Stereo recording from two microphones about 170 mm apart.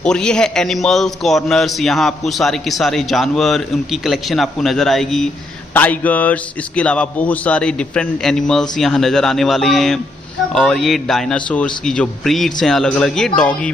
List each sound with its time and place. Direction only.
0.0 s a man's voice: 5° left (ahead or behind)